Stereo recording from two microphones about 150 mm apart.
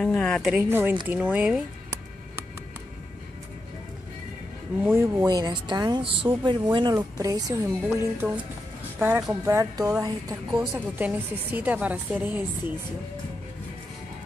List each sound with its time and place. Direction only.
0.0 s a sound: 5° left (ahead or behind)
0.4 s a woman's voice: 10° right (ahead or behind)
4.8 s speech: 15° right (ahead or behind)
10.7 s a woman's voice: 15° right (ahead or behind)